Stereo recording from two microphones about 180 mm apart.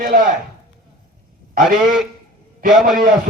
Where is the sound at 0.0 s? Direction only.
50° right (ahead or behind).